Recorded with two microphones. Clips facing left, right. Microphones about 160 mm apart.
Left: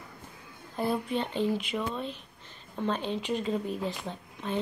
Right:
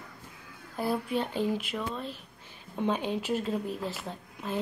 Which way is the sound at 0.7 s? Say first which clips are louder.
Even; 5° right (ahead or behind).